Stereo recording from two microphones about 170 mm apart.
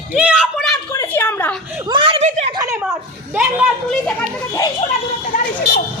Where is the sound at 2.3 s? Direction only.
40° right (ahead or behind).